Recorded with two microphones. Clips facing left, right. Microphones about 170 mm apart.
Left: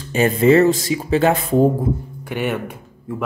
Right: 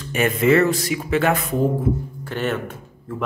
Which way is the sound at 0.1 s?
30° left (ahead or behind).